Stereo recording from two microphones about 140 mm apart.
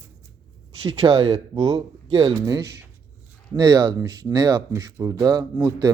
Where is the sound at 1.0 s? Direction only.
35° right (ahead or behind).